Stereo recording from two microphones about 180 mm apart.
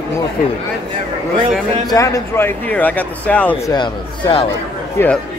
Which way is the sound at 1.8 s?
20° left (ahead or behind).